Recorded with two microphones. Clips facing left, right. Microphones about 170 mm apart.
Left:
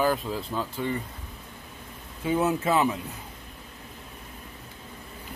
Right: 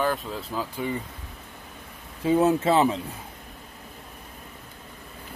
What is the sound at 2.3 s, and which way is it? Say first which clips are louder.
Speech: right 4 dB; 35° right (ahead or behind).